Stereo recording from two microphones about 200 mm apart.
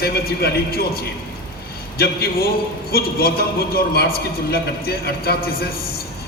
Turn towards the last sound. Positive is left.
turn(degrees=50)  # may be behind; listen again after turning